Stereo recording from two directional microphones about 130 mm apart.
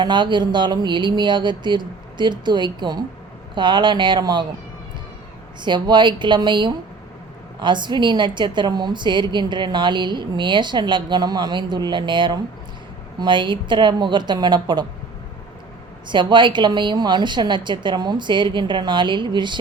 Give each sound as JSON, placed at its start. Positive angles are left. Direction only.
{"t": 0.0, "sound": "a woman's voice", "side_deg": -35}
{"t": 5.6, "sound": "a woman's voice", "side_deg": -35}
{"t": 16.0, "sound": "a woman's voice", "side_deg": -40}